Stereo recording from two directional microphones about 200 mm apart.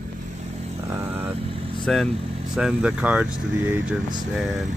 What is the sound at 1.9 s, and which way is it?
Speech, centre (ahead or behind).